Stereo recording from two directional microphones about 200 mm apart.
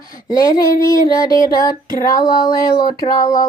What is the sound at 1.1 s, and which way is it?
Child singing, 20° left (ahead or behind).